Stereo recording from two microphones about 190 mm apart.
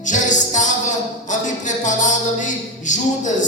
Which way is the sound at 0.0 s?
40° left (ahead or behind).